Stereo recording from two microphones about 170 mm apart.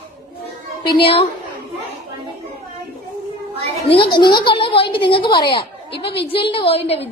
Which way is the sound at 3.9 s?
30° left (ahead or behind).